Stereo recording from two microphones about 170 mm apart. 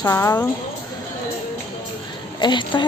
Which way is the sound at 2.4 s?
25° left (ahead or behind).